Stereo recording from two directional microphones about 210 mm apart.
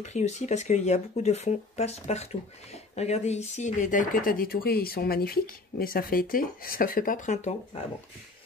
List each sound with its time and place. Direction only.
0.0 s speech: 35° left (ahead or behind)